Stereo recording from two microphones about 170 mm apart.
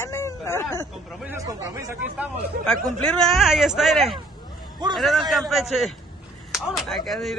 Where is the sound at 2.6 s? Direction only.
5° left (ahead or behind).